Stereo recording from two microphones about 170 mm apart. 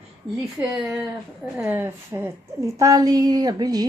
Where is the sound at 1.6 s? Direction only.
10° right (ahead or behind).